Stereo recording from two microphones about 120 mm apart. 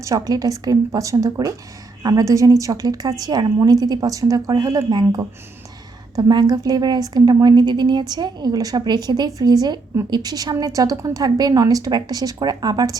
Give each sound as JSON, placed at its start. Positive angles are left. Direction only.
{"t": 0.0, "sound": "a woman's voice", "side_deg": -30}
{"t": 4.9, "sound": "a woman's voice", "side_deg": -35}